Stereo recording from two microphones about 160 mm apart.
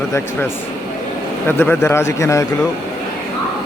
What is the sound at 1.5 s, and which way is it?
A man's voice, 15° left (ahead or behind).